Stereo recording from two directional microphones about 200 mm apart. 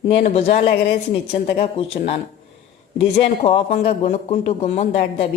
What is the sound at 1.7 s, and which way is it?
Speech, 30° left (ahead or behind).